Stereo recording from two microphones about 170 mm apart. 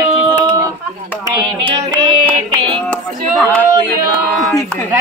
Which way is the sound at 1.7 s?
25° right (ahead or behind).